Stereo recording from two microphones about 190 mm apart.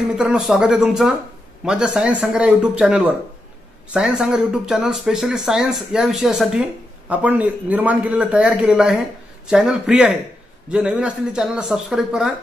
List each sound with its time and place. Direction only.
0.2 s speech: centre (ahead or behind)